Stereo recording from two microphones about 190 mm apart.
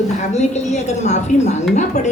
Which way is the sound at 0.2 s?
40° left (ahead or behind).